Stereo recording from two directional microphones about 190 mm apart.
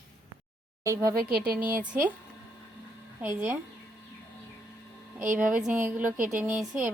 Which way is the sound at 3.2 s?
10° right (ahead or behind).